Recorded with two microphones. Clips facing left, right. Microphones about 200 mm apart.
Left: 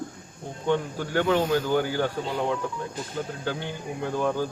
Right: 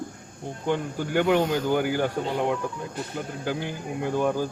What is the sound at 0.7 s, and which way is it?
Speech, 15° right (ahead or behind).